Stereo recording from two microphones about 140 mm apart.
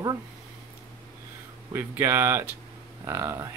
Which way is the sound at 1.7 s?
15° right (ahead or behind).